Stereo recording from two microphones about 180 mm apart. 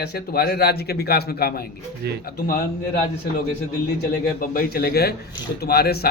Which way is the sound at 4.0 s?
55° left (ahead or behind).